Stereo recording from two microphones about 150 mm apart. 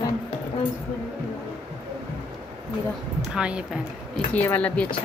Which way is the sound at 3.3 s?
5° right (ahead or behind).